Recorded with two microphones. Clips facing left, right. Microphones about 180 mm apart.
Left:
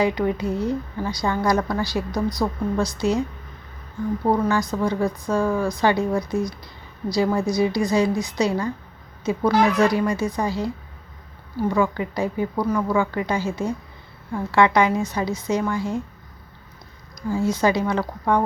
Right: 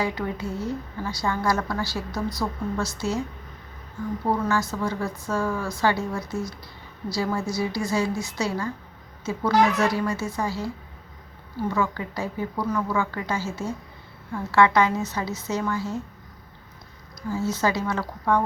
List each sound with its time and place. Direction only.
0.0 s a woman's voice: 20° left (ahead or behind)
4.3 s a woman's voice: 15° left (ahead or behind)
17.2 s a woman's voice: 15° left (ahead or behind)